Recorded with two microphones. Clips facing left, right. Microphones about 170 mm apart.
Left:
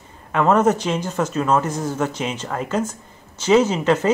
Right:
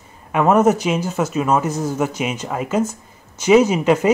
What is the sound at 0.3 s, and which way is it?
Speech, 10° right (ahead or behind).